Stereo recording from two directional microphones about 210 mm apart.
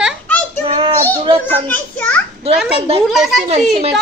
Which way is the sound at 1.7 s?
5° left (ahead or behind).